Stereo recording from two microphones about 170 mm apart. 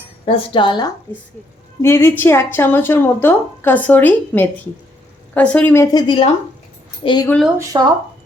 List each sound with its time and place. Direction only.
0.3 s speech: 30° left (ahead or behind)
1.1 s speech: 10° left (ahead or behind); by 7.3 s 30° left (ahead or behind)
7.7 s speech: 25° right (ahead or behind)